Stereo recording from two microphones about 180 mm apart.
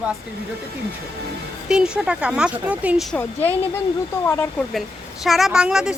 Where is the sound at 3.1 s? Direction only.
10° left (ahead or behind).